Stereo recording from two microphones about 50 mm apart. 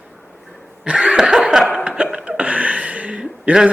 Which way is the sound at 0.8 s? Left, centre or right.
Right.